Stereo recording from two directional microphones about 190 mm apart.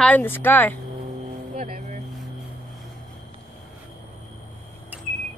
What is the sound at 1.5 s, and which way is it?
Vehicle, 40° right (ahead or behind).